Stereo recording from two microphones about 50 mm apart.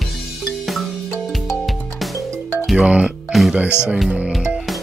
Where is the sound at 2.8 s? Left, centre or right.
Right.